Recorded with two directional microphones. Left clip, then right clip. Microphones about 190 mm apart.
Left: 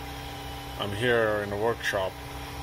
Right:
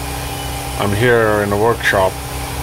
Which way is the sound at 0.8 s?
20° right (ahead or behind).